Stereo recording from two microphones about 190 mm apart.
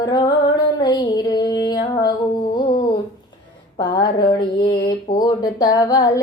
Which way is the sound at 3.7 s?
25° left (ahead or behind).